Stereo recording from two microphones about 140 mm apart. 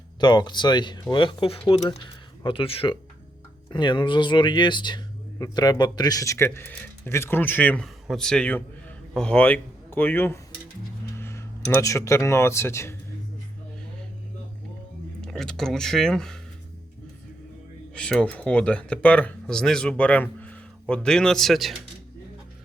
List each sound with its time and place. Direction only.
0.2 s speech: 30° left (ahead or behind)
15.2 s speech: 5° left (ahead or behind)
17.9 s speech: 5° left (ahead or behind)